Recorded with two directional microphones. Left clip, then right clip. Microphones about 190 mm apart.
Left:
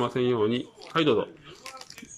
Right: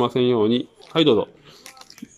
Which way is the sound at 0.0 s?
20° right (ahead or behind).